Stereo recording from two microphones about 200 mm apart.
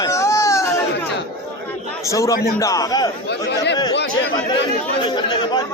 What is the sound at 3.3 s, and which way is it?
Speech, 60° left (ahead or behind).